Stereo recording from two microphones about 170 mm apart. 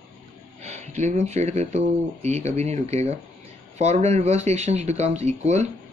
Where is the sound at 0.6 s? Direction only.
40° right (ahead or behind).